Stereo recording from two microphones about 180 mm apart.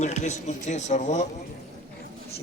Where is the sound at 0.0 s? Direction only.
40° left (ahead or behind).